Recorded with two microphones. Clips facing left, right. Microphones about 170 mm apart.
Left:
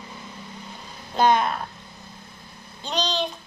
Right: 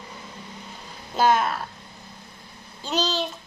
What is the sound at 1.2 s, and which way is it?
Child singing, 5° right (ahead or behind).